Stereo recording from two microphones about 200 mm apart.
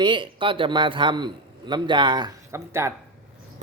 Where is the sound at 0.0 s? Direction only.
25° right (ahead or behind).